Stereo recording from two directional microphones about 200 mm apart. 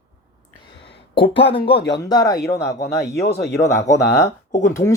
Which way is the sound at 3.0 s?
55° left (ahead or behind).